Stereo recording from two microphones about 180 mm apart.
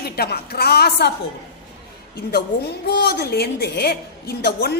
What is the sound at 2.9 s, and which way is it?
A woman's voice, 65° left (ahead or behind).